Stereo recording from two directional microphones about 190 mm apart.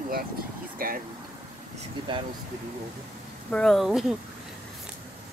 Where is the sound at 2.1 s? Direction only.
25° right (ahead or behind).